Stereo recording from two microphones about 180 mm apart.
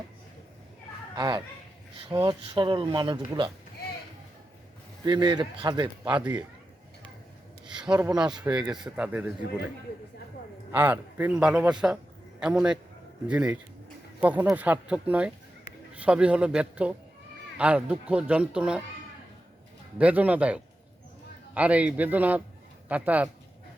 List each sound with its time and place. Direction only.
1.1 s speech: 25° right (ahead or behind)
5.0 s speech: 25° right (ahead or behind)
6.1 s speech: 5° right (ahead or behind)
7.7 s a man's voice: 5° right (ahead or behind)
10.7 s a man's voice: 10° right (ahead or behind)
20.0 s speech: 10° right (ahead or behind)